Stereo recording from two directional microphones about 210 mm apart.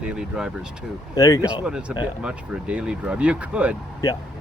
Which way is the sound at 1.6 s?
5° right (ahead or behind).